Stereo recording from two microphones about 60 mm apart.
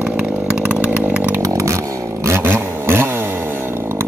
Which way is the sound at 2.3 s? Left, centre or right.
Right.